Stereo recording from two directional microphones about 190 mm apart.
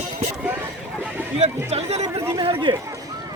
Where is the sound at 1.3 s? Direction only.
30° right (ahead or behind).